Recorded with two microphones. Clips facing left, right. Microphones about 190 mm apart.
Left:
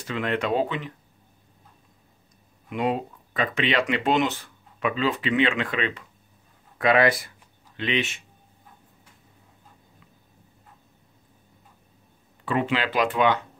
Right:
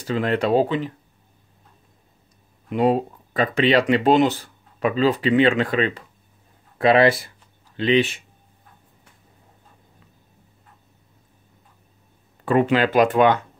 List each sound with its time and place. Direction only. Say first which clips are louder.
0.0 s speech: right 5 dB; 35° right (ahead or behind)
2.7 s speech: right 7 dB; 35° right (ahead or behind)
12.4 s speech: right 7 dB; 45° right (ahead or behind)